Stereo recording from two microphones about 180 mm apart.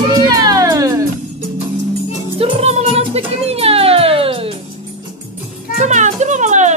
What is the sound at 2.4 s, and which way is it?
Music, 35° right (ahead or behind).